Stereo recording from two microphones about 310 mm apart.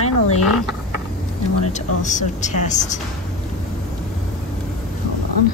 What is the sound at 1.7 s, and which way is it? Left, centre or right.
A woman's voice, left.